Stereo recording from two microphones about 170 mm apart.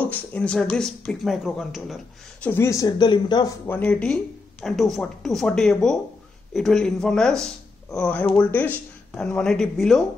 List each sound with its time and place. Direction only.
0.0 s speech: 10° left (ahead or behind)
2.4 s speech: 15° left (ahead or behind)
3.6 s speech: 10° left (ahead or behind)